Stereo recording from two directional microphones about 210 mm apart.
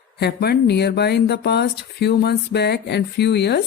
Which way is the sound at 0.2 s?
50° left (ahead or behind).